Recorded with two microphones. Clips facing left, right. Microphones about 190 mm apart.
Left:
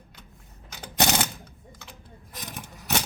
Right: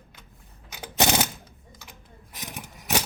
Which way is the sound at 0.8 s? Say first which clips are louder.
Right 1 dB; 15° right (ahead or behind).